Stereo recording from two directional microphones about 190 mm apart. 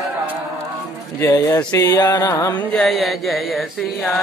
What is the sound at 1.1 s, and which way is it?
Mantra, 15° left (ahead or behind).